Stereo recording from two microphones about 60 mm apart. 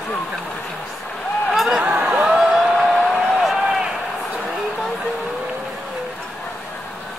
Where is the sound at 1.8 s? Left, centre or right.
Right.